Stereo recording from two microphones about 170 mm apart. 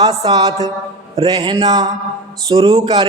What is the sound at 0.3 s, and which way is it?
Speech, 20° right (ahead or behind).